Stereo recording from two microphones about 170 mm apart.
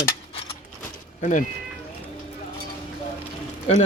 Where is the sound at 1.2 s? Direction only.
45° left (ahead or behind).